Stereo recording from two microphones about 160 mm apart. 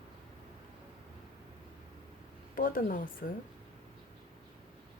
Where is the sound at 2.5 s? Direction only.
60° left (ahead or behind).